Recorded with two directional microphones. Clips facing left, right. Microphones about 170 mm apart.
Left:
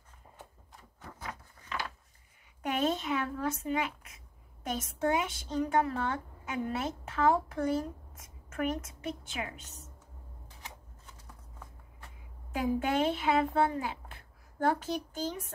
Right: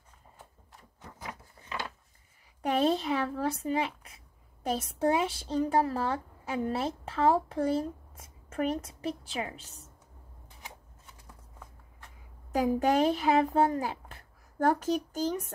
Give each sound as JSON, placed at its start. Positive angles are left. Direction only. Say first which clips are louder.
{"t": 1.6, "sound": "a sound", "louder": "even", "side_deg": -25}
{"t": 2.6, "sound": "speech", "louder": "right 4 dB", "side_deg": -35}
{"t": 12.5, "sound": "speech", "louder": "right 4 dB", "side_deg": -40}